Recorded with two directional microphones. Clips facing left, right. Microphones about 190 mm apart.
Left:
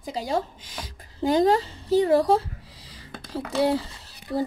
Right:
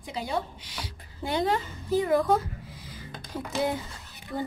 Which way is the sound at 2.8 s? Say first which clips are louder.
Even; 30° left (ahead or behind).